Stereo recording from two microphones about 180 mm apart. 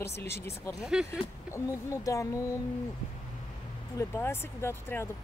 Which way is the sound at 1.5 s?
15° left (ahead or behind).